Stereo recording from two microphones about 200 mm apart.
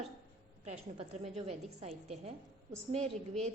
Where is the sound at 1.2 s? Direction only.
30° right (ahead or behind).